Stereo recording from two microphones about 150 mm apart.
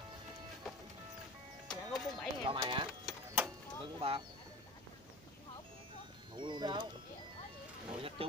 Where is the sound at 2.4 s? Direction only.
35° right (ahead or behind).